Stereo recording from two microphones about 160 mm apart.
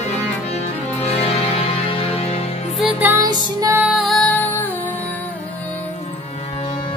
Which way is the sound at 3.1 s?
20° right (ahead or behind).